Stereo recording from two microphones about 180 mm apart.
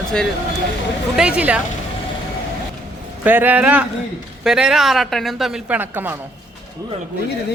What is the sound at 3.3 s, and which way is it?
Speech, 10° right (ahead or behind).